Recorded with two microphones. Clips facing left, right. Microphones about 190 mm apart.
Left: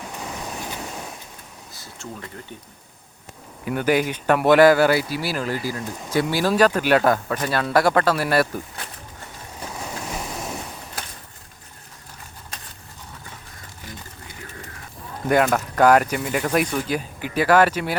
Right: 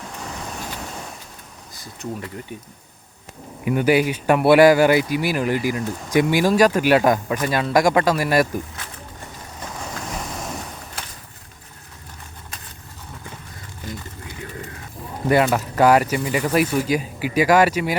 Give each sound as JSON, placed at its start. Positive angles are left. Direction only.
{"t": 1.8, "sound": "speech", "side_deg": -15}
{"t": 3.6, "sound": "speech", "side_deg": -10}
{"t": 10.2, "sound": "vehicle", "side_deg": 5}
{"t": 15.3, "sound": "speech", "side_deg": -5}